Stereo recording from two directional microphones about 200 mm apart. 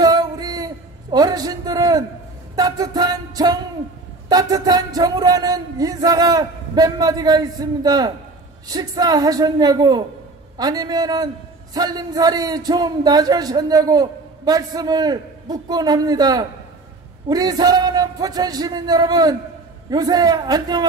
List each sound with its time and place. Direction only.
0.0 s a sound: 20° right (ahead or behind)
2.5 s music: 20° right (ahead or behind)
4.3 s a man's voice: 20° right (ahead or behind)